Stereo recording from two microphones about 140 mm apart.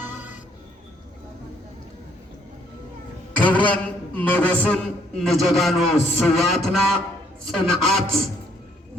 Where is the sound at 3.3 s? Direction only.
10° left (ahead or behind).